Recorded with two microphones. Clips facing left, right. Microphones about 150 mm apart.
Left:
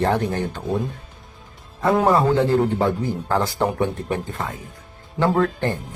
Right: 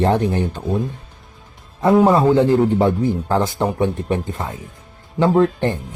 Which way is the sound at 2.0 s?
15° right (ahead or behind).